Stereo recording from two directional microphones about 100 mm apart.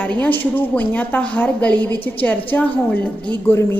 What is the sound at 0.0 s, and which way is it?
A woman's voice, 15° left (ahead or behind).